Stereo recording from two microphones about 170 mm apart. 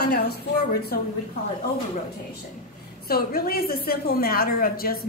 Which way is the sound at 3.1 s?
60° left (ahead or behind).